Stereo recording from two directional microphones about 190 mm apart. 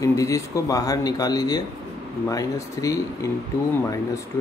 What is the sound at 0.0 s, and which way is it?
Speech, 15° left (ahead or behind).